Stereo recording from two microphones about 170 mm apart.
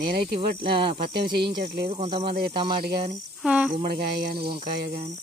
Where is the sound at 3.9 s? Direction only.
65° right (ahead or behind).